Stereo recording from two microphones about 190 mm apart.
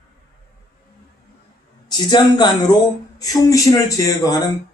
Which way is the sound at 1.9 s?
20° left (ahead or behind).